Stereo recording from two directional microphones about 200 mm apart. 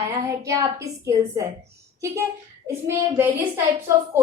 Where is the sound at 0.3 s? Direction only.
15° right (ahead or behind).